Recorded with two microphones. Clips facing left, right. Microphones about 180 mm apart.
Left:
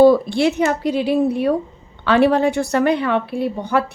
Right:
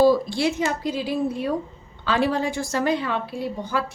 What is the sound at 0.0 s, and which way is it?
A woman's voice, 60° left (ahead or behind).